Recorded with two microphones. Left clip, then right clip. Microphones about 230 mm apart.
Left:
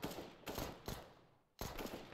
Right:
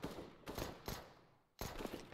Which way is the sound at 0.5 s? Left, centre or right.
Centre.